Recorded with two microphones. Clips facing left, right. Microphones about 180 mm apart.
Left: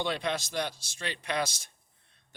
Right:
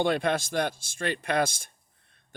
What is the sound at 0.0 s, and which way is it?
Speech, 50° right (ahead or behind).